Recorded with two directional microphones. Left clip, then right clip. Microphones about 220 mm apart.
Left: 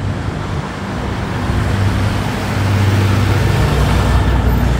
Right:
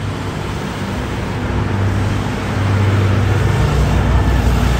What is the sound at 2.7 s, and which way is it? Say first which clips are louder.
Vehicle: even; 50° left (ahead or behind).